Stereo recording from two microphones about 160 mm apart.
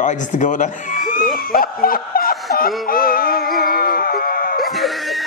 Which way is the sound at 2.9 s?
65° left (ahead or behind).